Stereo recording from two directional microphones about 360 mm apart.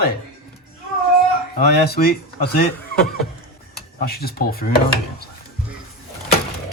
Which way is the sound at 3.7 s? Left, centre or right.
Left.